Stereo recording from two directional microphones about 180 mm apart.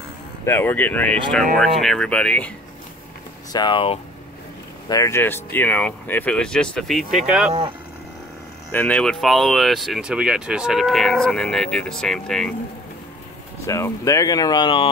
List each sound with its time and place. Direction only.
0.5 s speech: 10° left (ahead or behind)
3.5 s speech: 25° left (ahead or behind)
4.8 s speech: 20° left (ahead or behind); by 7.5 s 5° right (ahead or behind)
8.7 s speech: 5° left (ahead or behind)
13.7 s speech: 15° left (ahead or behind)